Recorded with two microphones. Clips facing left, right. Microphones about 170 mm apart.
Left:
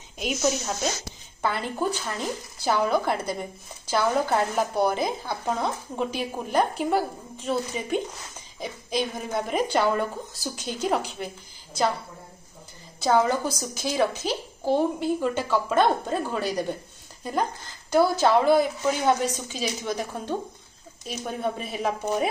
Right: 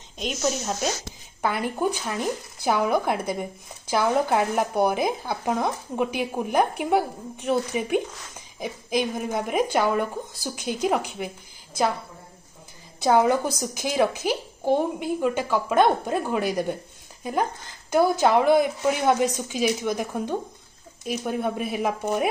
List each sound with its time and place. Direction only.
0.2 s speech: 5° left (ahead or behind)
1.4 s a woman's voice: 15° right (ahead or behind)
13.0 s a woman's voice: 15° right (ahead or behind)